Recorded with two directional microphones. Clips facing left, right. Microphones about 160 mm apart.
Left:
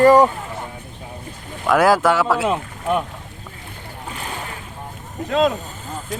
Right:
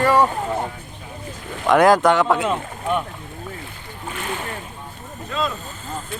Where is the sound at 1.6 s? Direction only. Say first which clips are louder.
Right 1 dB; 5° left (ahead or behind).